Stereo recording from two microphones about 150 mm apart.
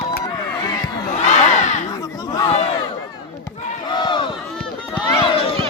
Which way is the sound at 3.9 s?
30° left (ahead or behind).